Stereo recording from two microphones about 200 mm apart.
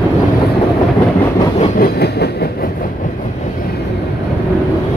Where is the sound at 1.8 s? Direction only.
55° left (ahead or behind).